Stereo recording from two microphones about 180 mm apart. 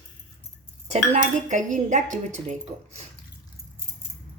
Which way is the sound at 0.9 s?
40° right (ahead or behind).